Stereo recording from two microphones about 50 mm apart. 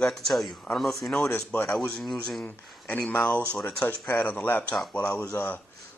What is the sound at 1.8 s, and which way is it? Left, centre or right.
Speech, centre.